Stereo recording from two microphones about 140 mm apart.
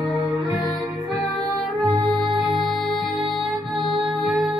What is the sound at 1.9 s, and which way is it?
Music, 35° right (ahead or behind).